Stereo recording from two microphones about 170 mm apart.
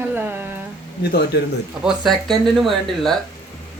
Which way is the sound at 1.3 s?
90° left.